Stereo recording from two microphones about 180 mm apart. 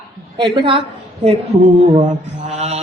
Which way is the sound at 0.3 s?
30° right (ahead or behind).